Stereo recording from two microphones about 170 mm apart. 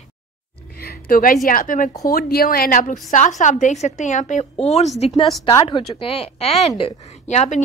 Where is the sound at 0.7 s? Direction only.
65° left (ahead or behind).